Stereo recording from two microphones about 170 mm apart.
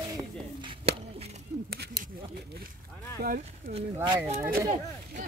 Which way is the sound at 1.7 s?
70° right (ahead or behind).